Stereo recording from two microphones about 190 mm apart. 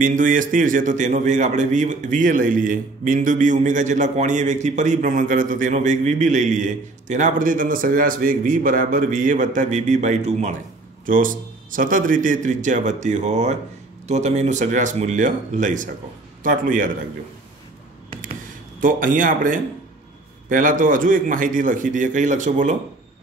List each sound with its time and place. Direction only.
0.0 s a man's voice: 45° right (ahead or behind)
18.8 s a man's voice: 45° right (ahead or behind)